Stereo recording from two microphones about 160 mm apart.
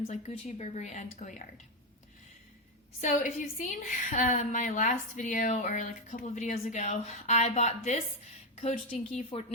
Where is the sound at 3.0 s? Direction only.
55° left (ahead or behind).